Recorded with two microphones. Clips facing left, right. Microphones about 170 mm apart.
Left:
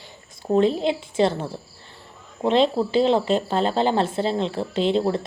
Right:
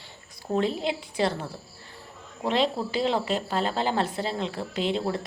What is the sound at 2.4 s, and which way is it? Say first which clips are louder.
Speech: left 6 dB; 25° left (ahead or behind).